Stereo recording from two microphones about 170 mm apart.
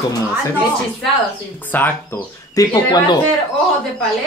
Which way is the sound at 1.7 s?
10° left (ahead or behind).